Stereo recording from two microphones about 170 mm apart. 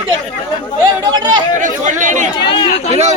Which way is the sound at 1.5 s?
45° right (ahead or behind).